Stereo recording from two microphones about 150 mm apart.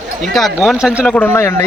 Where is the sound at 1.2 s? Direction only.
15° left (ahead or behind).